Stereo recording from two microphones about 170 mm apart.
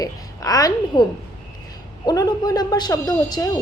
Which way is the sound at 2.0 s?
20° left (ahead or behind).